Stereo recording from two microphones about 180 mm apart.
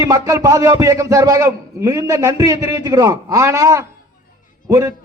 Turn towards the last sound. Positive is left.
turn(degrees=-15)  # may be behind; listen again after turning